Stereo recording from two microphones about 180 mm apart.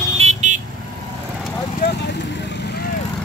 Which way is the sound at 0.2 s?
40° right (ahead or behind).